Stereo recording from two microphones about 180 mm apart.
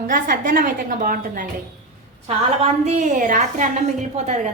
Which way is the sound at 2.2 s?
40° right (ahead or behind).